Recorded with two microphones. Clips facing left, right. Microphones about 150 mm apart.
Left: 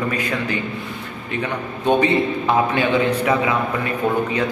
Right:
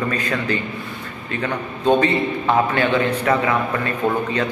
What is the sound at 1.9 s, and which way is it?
A man's voice, 15° left (ahead or behind).